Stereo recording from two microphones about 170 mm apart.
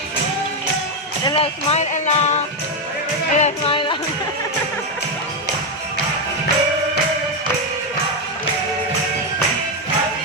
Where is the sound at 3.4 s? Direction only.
35° left (ahead or behind).